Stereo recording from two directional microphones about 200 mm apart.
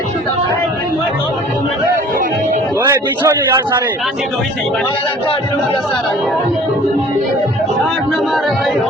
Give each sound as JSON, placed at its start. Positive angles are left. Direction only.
{"t": 2.9, "sound": "a man's voice", "side_deg": -15}